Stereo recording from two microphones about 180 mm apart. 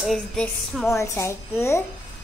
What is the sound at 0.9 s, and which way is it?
Speech, 15° left (ahead or behind).